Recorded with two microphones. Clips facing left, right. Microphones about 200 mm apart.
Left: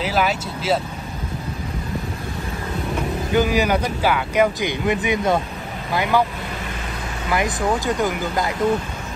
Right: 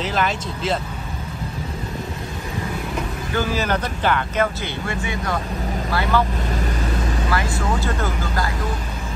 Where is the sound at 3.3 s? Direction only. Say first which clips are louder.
Left 4 dB; 15° left (ahead or behind).